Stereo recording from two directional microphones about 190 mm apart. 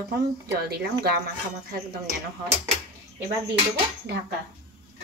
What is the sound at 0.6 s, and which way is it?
Speech, 55° right (ahead or behind).